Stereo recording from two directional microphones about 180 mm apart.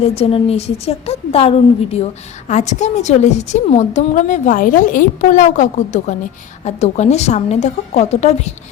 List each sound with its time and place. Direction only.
0.0 s a woman's voice: 35° left (ahead or behind)